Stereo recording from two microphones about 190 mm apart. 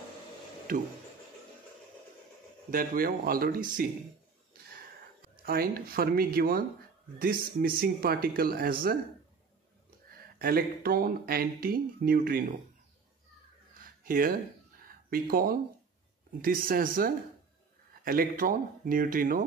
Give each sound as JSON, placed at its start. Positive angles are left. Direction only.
{"t": 0.7, "sound": "speech", "side_deg": -45}
{"t": 2.7, "sound": "speech", "side_deg": -50}
{"t": 5.2, "sound": "speech", "side_deg": -50}
{"t": 10.4, "sound": "speech", "side_deg": -50}
{"t": 14.0, "sound": "speech", "side_deg": -50}